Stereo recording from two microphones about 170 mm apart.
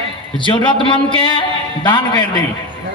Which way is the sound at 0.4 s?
30° left (ahead or behind).